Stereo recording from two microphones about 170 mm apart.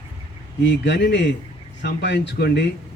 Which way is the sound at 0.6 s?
90° left.